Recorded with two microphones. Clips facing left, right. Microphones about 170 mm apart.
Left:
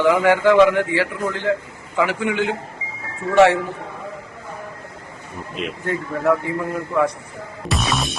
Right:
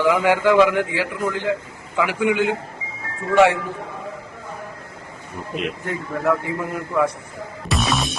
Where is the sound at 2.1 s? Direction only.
15° right (ahead or behind).